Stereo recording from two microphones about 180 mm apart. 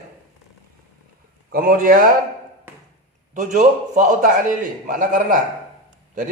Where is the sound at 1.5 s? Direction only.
55° right (ahead or behind).